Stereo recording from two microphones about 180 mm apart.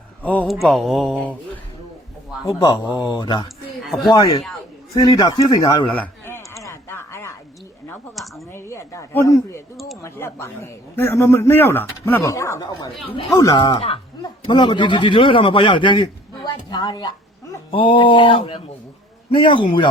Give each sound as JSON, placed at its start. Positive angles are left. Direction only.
{"t": 0.2, "sound": "a man's voice", "side_deg": 10}
{"t": 2.5, "sound": "speech", "side_deg": 20}
{"t": 3.8, "sound": "speech", "side_deg": 0}
{"t": 4.1, "sound": "speech", "side_deg": 20}
{"t": 5.9, "sound": "a sound", "side_deg": 10}
{"t": 8.5, "sound": "a man's voice", "side_deg": 15}